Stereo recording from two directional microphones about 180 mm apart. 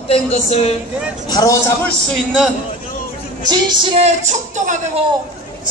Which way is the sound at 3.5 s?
25° right (ahead or behind).